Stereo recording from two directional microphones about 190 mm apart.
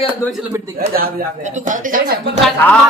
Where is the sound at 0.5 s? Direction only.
15° right (ahead or behind).